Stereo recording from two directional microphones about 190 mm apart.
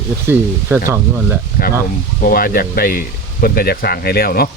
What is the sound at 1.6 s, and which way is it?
Speech, 50° left (ahead or behind).